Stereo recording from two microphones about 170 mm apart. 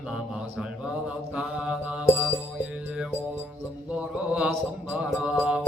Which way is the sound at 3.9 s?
5° right (ahead or behind).